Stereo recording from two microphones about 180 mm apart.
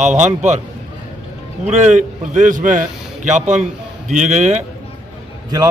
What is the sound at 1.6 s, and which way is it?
A man's voice, 40° right (ahead or behind).